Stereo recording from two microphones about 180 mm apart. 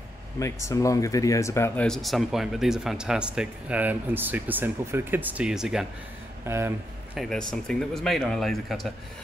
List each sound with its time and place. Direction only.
0.4 s speech: 15° left (ahead or behind)
1.9 s speech: centre (ahead or behind)
6.4 s speech: 15° right (ahead or behind)
7.2 s speech: centre (ahead or behind)